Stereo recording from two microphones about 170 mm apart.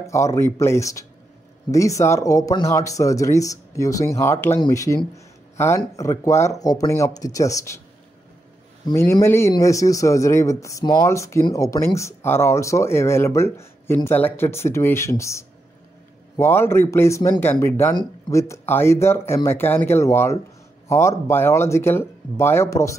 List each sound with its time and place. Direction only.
0.0 s speech: 15° left (ahead or behind)
8.8 s speech: 15° left (ahead or behind)